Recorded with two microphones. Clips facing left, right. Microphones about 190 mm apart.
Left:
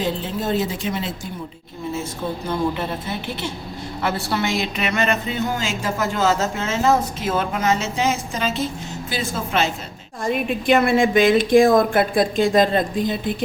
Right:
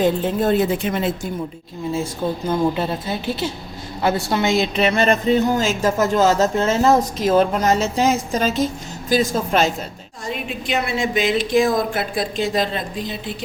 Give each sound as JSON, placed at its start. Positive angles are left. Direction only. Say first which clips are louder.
{"t": 0.0, "sound": "speech", "louder": "right 6 dB", "side_deg": -55}
{"t": 2.7, "sound": "a woman's voice", "louder": "right 3 dB", "side_deg": -30}
{"t": 10.2, "sound": "a woman's voice", "louder": "left 7 dB", "side_deg": 50}